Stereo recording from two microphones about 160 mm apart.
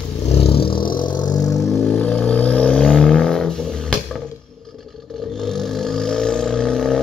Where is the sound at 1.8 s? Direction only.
5° left (ahead or behind).